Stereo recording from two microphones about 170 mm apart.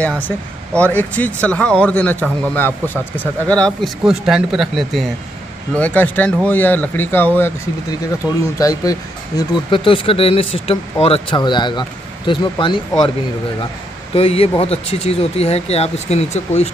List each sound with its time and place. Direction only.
0.0 s a man's voice: 10° left (ahead or behind)
8.2 s speech: 10° right (ahead or behind)
8.5 s speech: 20° left (ahead or behind)
9.4 s speech: 30° left (ahead or behind)
14.1 s speech: 35° left (ahead or behind)